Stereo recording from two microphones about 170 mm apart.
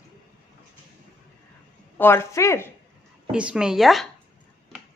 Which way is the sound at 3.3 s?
5° right (ahead or behind).